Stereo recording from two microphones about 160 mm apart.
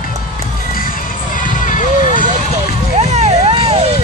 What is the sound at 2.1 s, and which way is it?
Vehicle, 50° right (ahead or behind).